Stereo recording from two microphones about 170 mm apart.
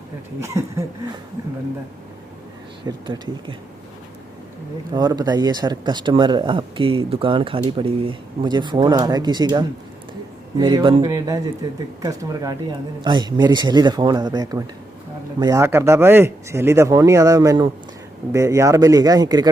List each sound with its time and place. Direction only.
0.3 s speech: 15° right (ahead or behind)
2.8 s speech: 30° right (ahead or behind)
4.9 s speech: 25° right (ahead or behind)